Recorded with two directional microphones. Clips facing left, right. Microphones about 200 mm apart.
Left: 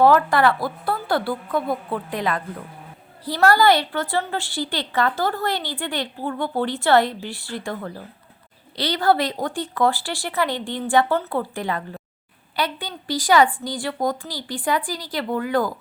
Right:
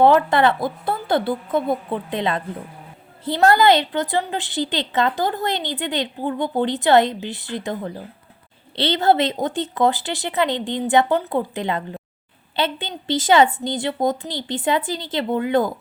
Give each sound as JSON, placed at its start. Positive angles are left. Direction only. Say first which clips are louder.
{"t": 0.0, "sound": "a woman's voice", "louder": "right 1 dB", "side_deg": -20}